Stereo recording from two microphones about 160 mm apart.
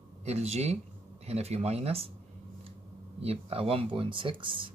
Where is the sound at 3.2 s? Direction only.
35° right (ahead or behind).